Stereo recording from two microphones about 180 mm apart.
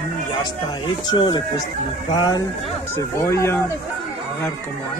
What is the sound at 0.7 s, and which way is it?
Speech, 25° left (ahead or behind).